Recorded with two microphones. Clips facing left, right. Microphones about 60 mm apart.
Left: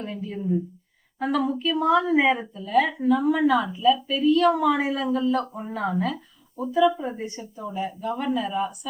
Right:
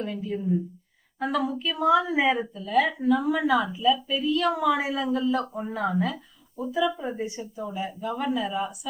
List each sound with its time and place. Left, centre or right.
0.3 s a woman's voice: centre